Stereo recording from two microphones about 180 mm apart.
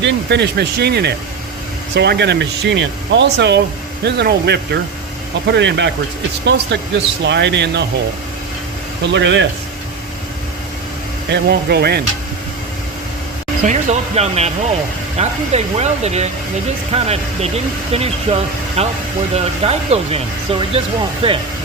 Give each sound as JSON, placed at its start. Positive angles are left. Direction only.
{"t": 0.0, "sound": "speech", "side_deg": -70}
{"t": 9.1, "sound": "speech", "side_deg": -80}
{"t": 11.3, "sound": "speech", "side_deg": -65}
{"t": 13.7, "sound": "speech", "side_deg": -40}